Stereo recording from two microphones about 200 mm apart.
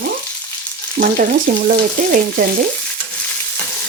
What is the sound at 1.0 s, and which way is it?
Speech, 45° right (ahead or behind).